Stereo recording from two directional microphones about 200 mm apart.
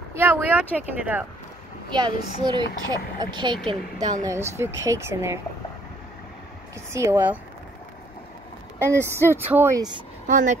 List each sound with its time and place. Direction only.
0.1 s speech: 10° right (ahead or behind)
1.9 s speech: 25° right (ahead or behind)
6.9 s speech: 15° right (ahead or behind)
8.7 s speech: 10° right (ahead or behind)
10.2 s speech: 40° right (ahead or behind)